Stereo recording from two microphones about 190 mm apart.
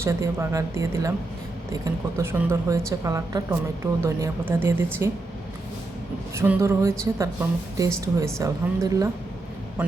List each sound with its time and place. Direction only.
0.0 s a woman's voice: 15° right (ahead or behind)
6.3 s a woman's voice: 15° right (ahead or behind)